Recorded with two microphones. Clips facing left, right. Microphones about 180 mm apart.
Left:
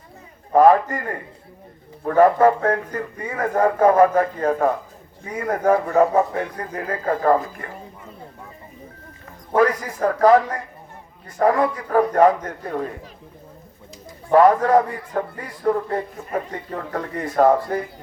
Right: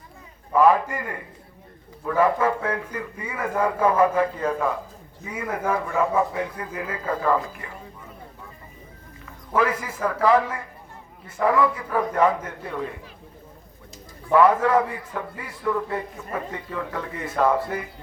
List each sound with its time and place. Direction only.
0.5 s a man's voice: 45° left (ahead or behind)
9.6 s a man's voice: 45° left (ahead or behind)
14.3 s a man's voice: 40° left (ahead or behind)